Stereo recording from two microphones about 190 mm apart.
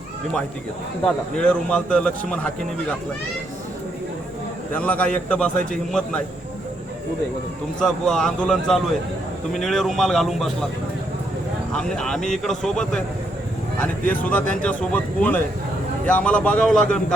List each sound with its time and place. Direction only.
1.0 s a man's voice: 5° left (ahead or behind)
4.7 s speech: 10° left (ahead or behind)
7.8 s a man's voice: centre (ahead or behind)
11.7 s a man's voice: 5° left (ahead or behind)